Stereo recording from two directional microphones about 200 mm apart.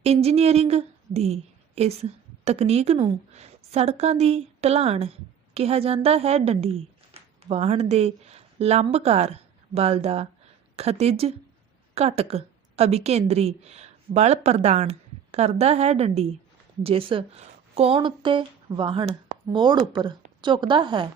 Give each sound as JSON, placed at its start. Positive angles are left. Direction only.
{"t": 0.0, "sound": "a woman's voice", "side_deg": -30}